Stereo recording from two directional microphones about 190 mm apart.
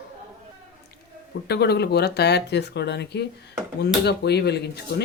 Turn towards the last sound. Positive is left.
turn(degrees=60)  # may be behind; listen again after turning